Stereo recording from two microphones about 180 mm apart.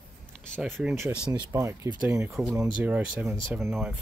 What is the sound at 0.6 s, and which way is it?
Speech, 5° right (ahead or behind).